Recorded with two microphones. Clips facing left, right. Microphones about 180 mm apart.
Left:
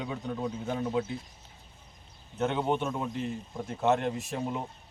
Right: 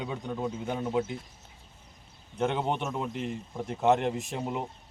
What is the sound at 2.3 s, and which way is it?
A man's voice, 15° right (ahead or behind).